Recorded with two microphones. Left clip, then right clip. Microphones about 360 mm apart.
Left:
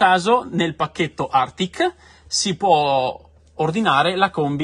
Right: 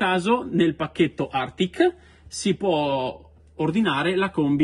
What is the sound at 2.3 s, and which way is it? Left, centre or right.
Speech, left.